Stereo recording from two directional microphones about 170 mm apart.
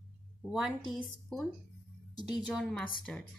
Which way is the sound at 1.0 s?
5° left (ahead or behind).